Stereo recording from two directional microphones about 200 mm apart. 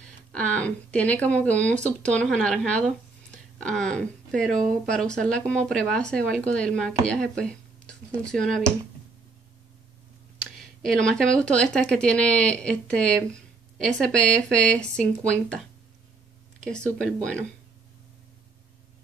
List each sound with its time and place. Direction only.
0.3 s speech: 5° left (ahead or behind)
10.6 s speech: 5° left (ahead or behind)
17.0 s speech: 5° left (ahead or behind)